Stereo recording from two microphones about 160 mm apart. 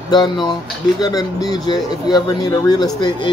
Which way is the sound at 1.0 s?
25° left (ahead or behind).